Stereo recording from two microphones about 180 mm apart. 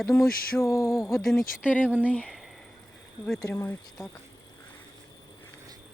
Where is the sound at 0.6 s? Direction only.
15° left (ahead or behind).